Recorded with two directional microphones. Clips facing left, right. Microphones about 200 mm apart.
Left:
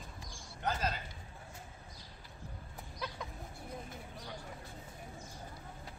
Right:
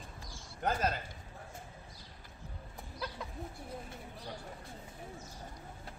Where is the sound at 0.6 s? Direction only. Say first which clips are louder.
Right 3 dB; 50° right (ahead or behind).